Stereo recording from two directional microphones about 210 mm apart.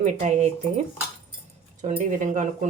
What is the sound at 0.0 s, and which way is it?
Speech, 35° right (ahead or behind).